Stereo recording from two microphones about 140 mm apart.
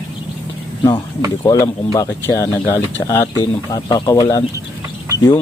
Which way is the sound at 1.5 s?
25° left (ahead or behind).